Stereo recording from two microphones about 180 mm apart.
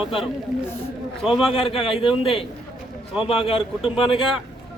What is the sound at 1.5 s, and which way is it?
A man's voice, 30° left (ahead or behind).